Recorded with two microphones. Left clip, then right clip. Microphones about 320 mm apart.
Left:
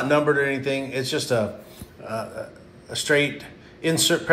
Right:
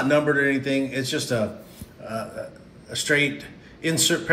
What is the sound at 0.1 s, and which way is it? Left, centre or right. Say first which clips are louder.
A man's voice: left 1 dB; centre.